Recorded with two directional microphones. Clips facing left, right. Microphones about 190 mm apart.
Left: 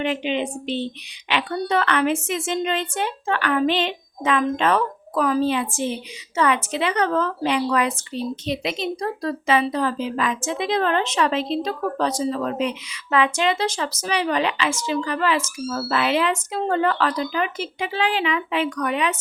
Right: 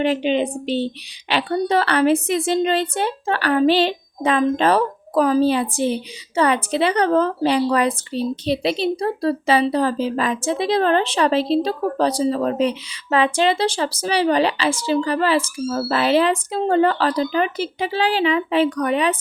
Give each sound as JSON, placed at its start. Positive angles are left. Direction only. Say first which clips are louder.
{"t": 0.0, "sound": "a woman's voice", "louder": "right 5 dB", "side_deg": -35}